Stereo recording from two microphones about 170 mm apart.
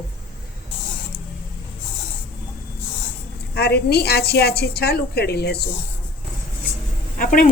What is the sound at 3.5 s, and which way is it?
A woman's voice, 70° left (ahead or behind).